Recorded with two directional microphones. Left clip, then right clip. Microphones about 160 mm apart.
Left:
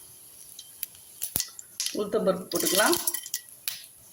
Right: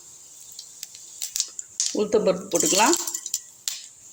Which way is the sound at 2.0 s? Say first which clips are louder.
Right 5 dB; 45° right (ahead or behind).